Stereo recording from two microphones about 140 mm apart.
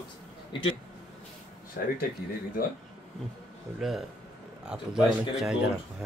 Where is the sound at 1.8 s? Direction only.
90° left.